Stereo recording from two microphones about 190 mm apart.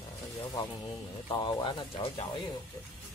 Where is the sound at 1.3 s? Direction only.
25° left (ahead or behind).